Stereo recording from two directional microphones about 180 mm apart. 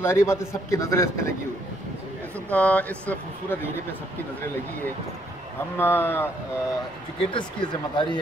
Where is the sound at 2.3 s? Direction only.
10° left (ahead or behind).